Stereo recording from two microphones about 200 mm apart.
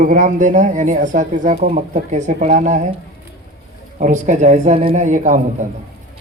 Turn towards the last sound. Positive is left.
turn(degrees=-40)  # may be behind; listen again after turning